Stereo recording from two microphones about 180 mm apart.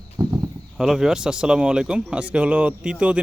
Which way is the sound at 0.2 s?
20° right (ahead or behind).